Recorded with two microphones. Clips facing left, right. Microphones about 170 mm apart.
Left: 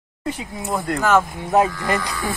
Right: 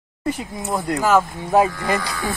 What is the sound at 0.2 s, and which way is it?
Speech, 5° right (ahead or behind).